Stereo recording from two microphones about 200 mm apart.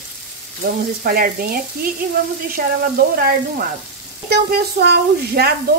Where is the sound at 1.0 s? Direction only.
45° right (ahead or behind).